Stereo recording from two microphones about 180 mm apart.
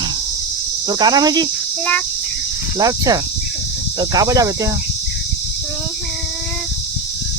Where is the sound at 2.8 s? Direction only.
20° right (ahead or behind).